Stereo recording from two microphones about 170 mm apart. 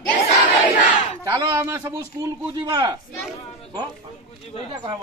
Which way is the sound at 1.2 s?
15° right (ahead or behind).